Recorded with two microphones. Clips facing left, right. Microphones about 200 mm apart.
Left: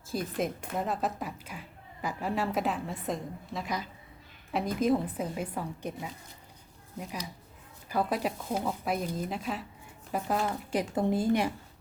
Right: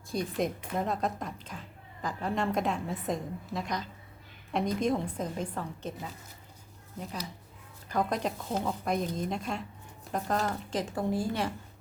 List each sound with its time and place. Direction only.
0.1 s a woman's voice: centre (ahead or behind)
7.9 s a woman's voice: 5° left (ahead or behind)
10.9 s a woman's voice: 20° left (ahead or behind)